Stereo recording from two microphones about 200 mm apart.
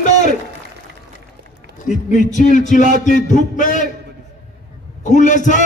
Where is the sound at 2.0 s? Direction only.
40° left (ahead or behind).